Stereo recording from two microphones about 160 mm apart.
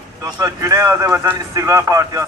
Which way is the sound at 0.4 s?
20° right (ahead or behind).